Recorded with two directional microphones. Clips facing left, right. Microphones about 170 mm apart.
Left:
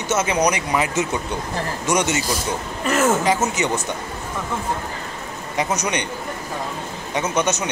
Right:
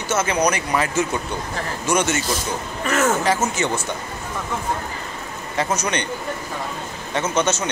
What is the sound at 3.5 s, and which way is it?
Speech, 20° left (ahead or behind).